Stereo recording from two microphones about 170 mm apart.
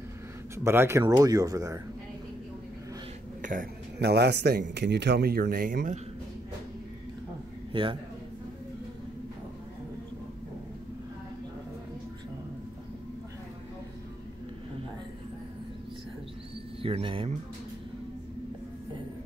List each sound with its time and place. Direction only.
0.7 s speech: 15° right (ahead or behind)
4.0 s a man's voice: 75° right (ahead or behind); by 5.9 s 55° right (ahead or behind)
7.7 s a man's voice: 30° right (ahead or behind)
16.8 s speech: 35° right (ahead or behind)